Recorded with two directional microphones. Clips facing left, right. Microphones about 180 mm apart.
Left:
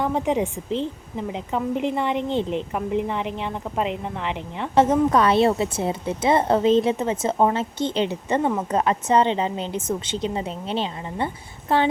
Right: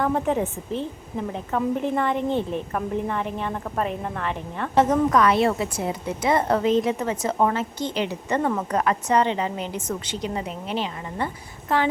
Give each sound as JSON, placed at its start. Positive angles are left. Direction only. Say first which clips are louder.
{"t": 0.0, "sound": "a woman's voice", "louder": "even", "side_deg": 15}